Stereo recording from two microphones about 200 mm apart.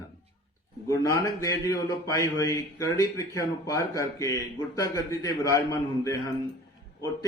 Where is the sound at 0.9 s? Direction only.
15° left (ahead or behind).